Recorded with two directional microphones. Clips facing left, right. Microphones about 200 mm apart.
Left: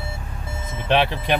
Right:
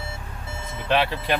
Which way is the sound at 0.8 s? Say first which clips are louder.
Left 2 dB; 20° left (ahead or behind).